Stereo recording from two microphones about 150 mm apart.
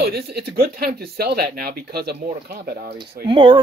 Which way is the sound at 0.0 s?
90° right.